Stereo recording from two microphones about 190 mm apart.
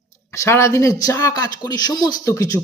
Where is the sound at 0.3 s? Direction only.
15° left (ahead or behind).